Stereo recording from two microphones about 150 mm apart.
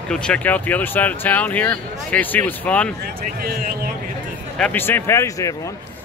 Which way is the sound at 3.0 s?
85° right.